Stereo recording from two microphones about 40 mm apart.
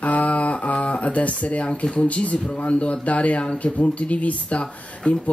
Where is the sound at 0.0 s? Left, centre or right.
Left.